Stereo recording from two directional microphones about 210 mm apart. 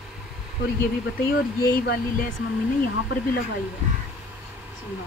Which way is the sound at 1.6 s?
45° left (ahead or behind).